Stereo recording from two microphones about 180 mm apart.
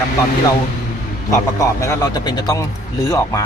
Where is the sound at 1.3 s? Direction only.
15° left (ahead or behind).